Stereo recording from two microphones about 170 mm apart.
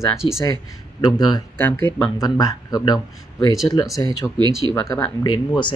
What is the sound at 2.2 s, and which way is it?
Speech, 25° left (ahead or behind).